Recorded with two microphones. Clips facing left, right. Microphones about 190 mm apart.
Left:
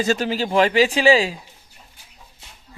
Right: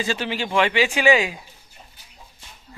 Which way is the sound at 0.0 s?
40° left (ahead or behind).